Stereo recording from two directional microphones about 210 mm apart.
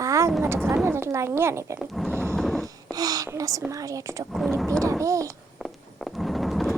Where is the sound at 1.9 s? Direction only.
Centre (ahead or behind).